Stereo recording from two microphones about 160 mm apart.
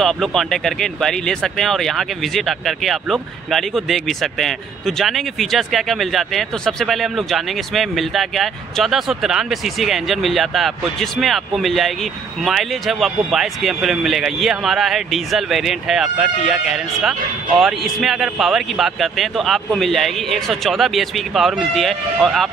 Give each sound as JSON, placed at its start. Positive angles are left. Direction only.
{"t": 0.0, "sound": "speech", "side_deg": 0}